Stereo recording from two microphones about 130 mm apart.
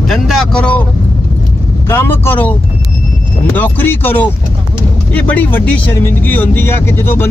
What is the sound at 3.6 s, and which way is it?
Speech, 15° left (ahead or behind).